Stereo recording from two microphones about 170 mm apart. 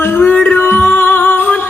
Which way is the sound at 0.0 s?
10° left (ahead or behind).